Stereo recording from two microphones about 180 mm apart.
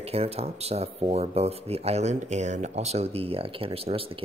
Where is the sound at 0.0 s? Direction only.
35° right (ahead or behind).